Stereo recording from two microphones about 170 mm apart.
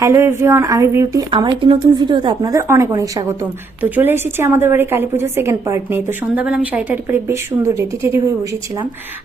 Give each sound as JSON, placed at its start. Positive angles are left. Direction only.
{"t": 0.0, "sound": "speech", "side_deg": -15}
{"t": 3.4, "sound": "a woman's voice", "side_deg": -10}